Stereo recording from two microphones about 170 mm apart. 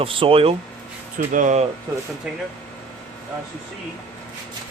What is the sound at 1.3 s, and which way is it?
Speech, 50° right (ahead or behind).